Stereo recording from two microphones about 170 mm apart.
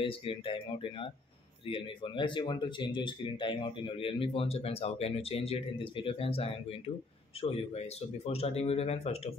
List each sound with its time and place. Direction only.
0.0 s speech: 30° left (ahead or behind)